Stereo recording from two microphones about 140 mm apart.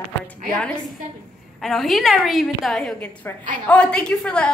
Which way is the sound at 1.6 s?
Centre (ahead or behind).